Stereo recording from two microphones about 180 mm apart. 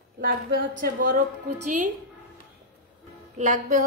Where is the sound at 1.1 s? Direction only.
70° right (ahead or behind).